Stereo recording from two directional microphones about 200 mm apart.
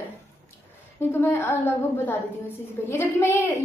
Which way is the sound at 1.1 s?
10° left (ahead or behind).